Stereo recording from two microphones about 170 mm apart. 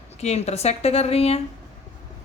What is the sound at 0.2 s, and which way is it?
A man's voice, 40° left (ahead or behind).